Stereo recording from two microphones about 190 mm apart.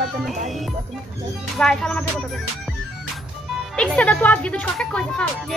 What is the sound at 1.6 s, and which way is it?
Speech, 5° left (ahead or behind).